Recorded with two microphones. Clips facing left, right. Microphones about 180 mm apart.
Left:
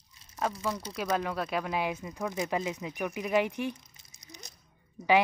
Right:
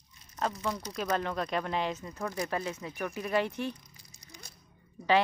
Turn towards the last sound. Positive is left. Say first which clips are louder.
# left 2 dB
turn(degrees=10)  # may be behind; listen again after turning